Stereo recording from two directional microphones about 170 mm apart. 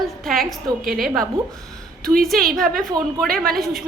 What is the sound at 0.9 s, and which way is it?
Speech, 60° right (ahead or behind).